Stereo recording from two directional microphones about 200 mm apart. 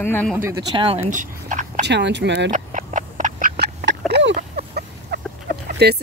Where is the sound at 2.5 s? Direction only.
40° right (ahead or behind).